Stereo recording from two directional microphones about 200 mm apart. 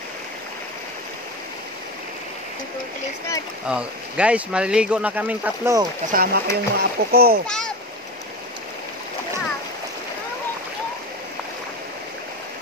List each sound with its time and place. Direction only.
3.6 s speech: 5° right (ahead or behind)
6.1 s a child's voice: 50° right (ahead or behind)
7.4 s a child's voice: 5° left (ahead or behind)